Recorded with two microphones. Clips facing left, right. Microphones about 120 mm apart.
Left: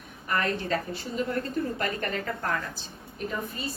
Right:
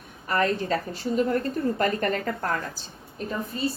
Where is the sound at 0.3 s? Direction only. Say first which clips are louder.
Right 4 dB; 35° right (ahead or behind).